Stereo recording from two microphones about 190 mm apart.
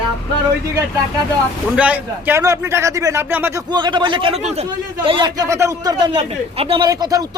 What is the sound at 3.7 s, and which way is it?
A man's voice, 25° right (ahead or behind).